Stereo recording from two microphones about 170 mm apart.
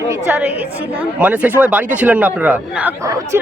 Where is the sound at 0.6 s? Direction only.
10° right (ahead or behind).